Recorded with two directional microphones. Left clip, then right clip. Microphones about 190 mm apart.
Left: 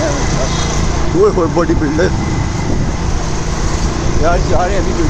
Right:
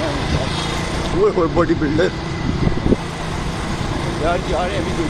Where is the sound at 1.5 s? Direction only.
5° left (ahead or behind).